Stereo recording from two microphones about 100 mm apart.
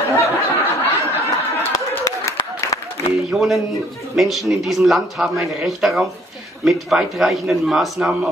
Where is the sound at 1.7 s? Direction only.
40° left (ahead or behind).